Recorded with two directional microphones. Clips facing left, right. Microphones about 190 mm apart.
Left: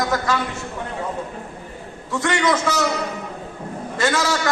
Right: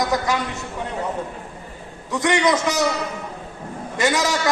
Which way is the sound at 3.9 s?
20° right (ahead or behind).